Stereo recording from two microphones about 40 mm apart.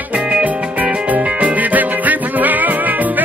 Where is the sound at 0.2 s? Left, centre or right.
Centre.